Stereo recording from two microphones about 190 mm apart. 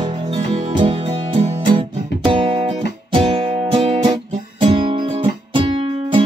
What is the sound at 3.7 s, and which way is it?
Music, 25° right (ahead or behind).